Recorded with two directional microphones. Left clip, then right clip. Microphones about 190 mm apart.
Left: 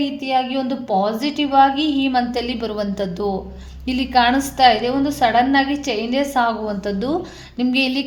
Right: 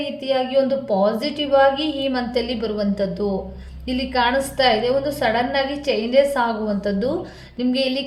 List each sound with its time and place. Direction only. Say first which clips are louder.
0.3 s a woman's voice: right 3 dB; 45° left (ahead or behind)